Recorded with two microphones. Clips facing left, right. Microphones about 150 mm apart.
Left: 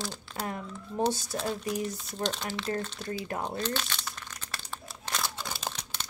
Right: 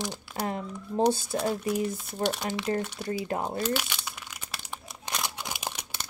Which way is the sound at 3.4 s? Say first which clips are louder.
Right 3 dB; 10° right (ahead or behind).